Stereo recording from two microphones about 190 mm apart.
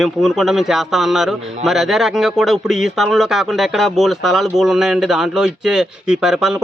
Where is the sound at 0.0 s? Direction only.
Centre (ahead or behind).